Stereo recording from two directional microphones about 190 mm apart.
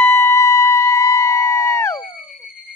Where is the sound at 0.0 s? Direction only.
15° left (ahead or behind).